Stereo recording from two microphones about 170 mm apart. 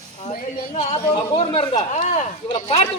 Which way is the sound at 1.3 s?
35° left (ahead or behind).